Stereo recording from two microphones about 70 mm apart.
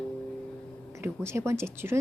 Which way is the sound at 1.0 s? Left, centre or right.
Right.